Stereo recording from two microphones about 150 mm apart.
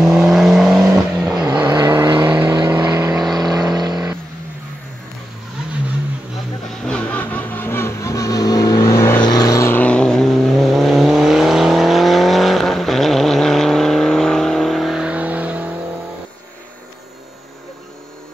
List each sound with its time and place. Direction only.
0.0 s vehicle: centre (ahead or behind)
1.7 s vehicle: 25° right (ahead or behind)
6.8 s vehicle: 10° left (ahead or behind); by 15.7 s 10° right (ahead or behind)